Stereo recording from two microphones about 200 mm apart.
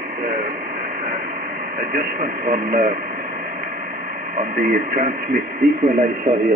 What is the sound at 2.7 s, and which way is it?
Radio, 40° right (ahead or behind).